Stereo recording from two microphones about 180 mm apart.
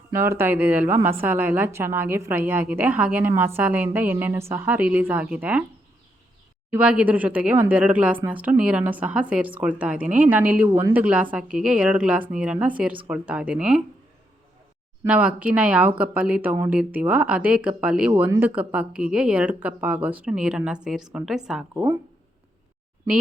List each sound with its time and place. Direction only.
0.1 s speech: 15° right (ahead or behind)
6.7 s speech: 5° right (ahead or behind)
15.0 s speech: 5° right (ahead or behind)